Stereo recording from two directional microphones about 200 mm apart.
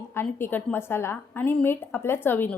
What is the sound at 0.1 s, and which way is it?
A woman's voice, 10° left (ahead or behind).